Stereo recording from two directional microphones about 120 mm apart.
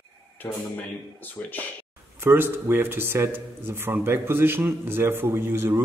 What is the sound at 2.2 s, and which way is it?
Speech, 20° right (ahead or behind).